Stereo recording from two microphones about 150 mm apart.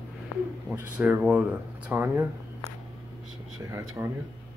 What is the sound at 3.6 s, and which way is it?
Speech, 20° right (ahead or behind).